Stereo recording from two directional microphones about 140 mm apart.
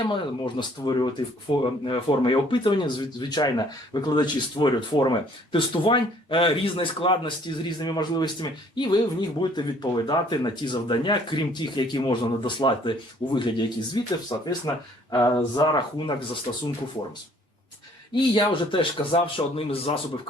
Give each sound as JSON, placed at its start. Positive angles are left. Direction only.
{"t": 0.0, "sound": "speech", "side_deg": 35}
{"t": 18.1, "sound": "speech", "side_deg": 35}